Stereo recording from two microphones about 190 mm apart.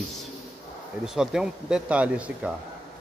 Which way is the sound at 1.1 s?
5° right (ahead or behind).